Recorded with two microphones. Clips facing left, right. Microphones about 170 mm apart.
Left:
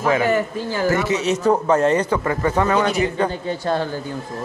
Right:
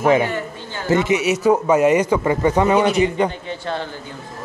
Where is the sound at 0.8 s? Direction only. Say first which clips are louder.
Right 3 dB; 20° right (ahead or behind).